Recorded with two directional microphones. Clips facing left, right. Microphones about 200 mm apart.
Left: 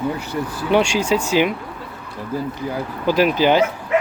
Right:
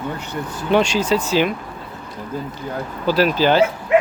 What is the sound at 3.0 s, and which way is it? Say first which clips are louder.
Speech: even; 15° left (ahead or behind).